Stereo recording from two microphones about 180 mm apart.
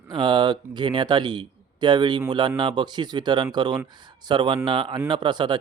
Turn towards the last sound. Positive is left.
turn(degrees=-25)  # may be behind; listen again after turning